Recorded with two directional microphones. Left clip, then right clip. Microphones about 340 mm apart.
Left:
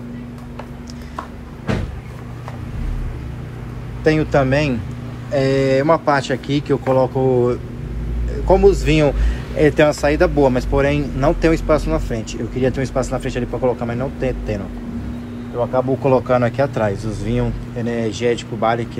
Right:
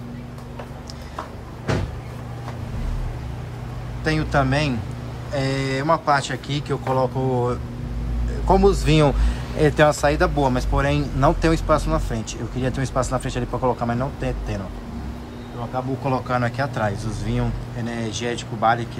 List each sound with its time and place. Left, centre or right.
4.0 s a man's voice: centre
15.7 s a man's voice: centre
17.8 s speech: right
18.3 s speech: centre